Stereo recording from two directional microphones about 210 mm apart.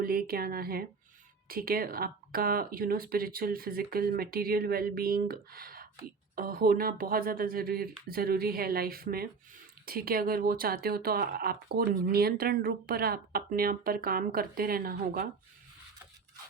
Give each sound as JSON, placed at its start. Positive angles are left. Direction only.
{"t": 0.0, "sound": "speech", "side_deg": -45}